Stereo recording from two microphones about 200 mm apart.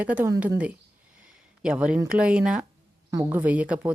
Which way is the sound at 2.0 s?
5° right (ahead or behind).